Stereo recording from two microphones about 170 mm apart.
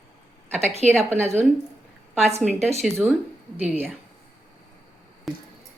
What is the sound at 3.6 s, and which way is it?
Speech, 10° right (ahead or behind).